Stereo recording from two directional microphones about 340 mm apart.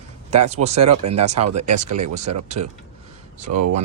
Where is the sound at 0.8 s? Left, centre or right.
Right.